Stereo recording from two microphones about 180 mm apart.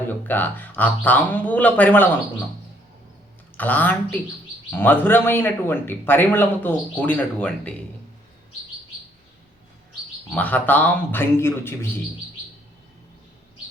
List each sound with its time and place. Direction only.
0.1 s speech: 10° left (ahead or behind)
3.6 s speech: 10° left (ahead or behind)
10.3 s speech: 10° left (ahead or behind)